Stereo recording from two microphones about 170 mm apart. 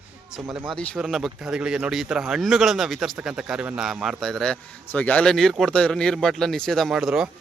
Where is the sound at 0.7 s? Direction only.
Centre (ahead or behind).